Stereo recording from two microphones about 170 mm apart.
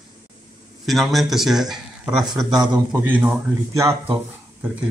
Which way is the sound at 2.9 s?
10° right (ahead or behind).